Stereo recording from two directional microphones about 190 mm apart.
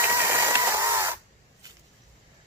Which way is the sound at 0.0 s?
15° right (ahead or behind).